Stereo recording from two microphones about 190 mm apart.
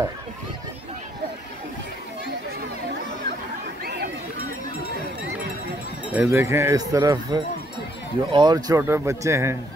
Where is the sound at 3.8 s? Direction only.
55° right (ahead or behind).